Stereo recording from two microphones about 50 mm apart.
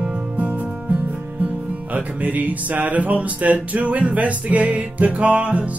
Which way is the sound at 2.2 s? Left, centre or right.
Right.